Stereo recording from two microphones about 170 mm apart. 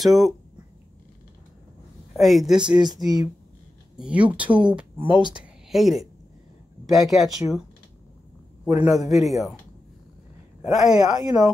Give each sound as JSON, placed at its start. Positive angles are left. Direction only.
{"t": 0.0, "sound": "speech", "side_deg": 0}
{"t": 2.1, "sound": "speech", "side_deg": 0}
{"t": 3.0, "sound": "speech", "side_deg": -25}
{"t": 4.0, "sound": "speech", "side_deg": -5}
{"t": 4.9, "sound": "speech", "side_deg": -30}
{"t": 5.4, "sound": "speech", "side_deg": 0}
{"t": 8.7, "sound": "speech", "side_deg": -10}
{"t": 10.6, "sound": "speech", "side_deg": -5}
{"t": 11.1, "sound": "speech", "side_deg": -20}